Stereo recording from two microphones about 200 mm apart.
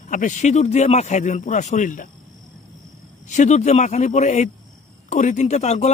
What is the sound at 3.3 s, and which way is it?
Speech, 35° left (ahead or behind).